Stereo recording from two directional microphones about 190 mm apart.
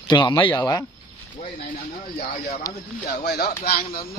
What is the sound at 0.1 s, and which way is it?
Speech, 25° left (ahead or behind).